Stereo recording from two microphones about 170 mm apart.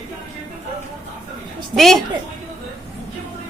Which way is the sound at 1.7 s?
Centre (ahead or behind).